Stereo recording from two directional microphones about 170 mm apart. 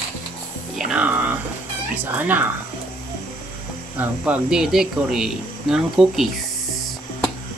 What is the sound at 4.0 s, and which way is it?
Speech, 5° right (ahead or behind).